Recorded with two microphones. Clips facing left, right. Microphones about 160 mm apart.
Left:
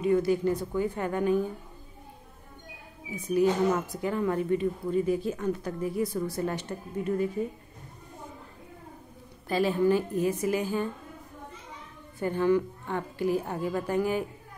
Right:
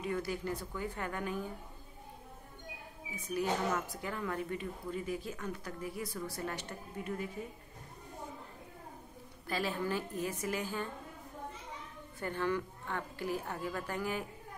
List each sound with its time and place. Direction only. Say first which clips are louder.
0.0 s speech: left 12 dB; 20° left (ahead or behind)
3.3 s speech: left 9 dB; 25° left (ahead or behind)
9.5 s a woman's voice: left 11 dB; 20° left (ahead or behind)
12.2 s a woman's voice: left 10 dB; 15° left (ahead or behind)